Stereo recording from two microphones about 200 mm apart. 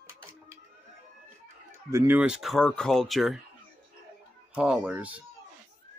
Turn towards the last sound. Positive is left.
turn(degrees=-5)  # may be behind; listen again after turning